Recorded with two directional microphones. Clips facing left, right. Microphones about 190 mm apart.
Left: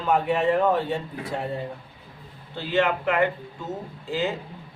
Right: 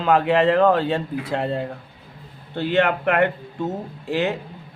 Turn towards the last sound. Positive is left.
turn(degrees=-65)  # may be behind; listen again after turning